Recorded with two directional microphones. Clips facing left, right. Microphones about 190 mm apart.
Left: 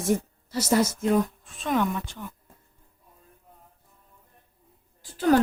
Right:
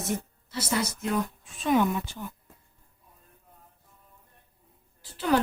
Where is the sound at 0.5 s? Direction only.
45° left (ahead or behind).